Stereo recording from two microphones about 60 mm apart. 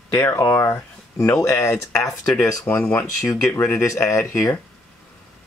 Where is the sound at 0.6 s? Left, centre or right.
Left.